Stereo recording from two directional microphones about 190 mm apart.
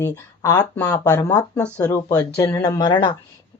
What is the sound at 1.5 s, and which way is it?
Speech, 5° left (ahead or behind).